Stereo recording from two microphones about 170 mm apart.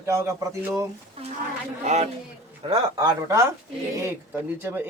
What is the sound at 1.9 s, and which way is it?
Speech, 40° right (ahead or behind).